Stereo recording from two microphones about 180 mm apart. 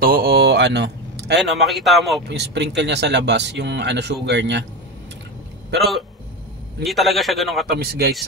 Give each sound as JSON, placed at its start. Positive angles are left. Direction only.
{"t": 0.0, "sound": "a sound", "side_deg": -55}
{"t": 1.4, "sound": "a man's voice", "side_deg": 0}
{"t": 2.2, "sound": "speech", "side_deg": -70}
{"t": 6.8, "sound": "a man's voice", "side_deg": 0}
{"t": 7.7, "sound": "speech", "side_deg": -65}